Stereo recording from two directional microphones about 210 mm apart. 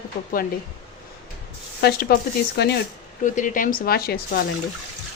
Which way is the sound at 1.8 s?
50° left (ahead or behind).